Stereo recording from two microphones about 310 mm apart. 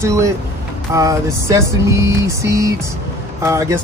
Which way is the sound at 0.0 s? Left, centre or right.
Centre.